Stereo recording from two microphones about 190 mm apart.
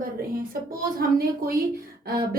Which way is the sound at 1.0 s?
50° right (ahead or behind).